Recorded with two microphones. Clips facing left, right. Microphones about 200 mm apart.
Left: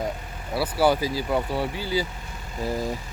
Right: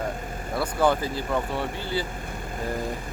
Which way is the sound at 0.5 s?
5° left (ahead or behind).